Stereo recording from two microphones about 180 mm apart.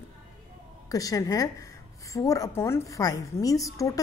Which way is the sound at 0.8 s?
20° left (ahead or behind).